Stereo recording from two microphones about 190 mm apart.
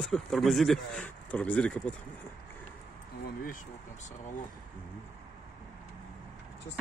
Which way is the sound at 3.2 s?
50° left (ahead or behind).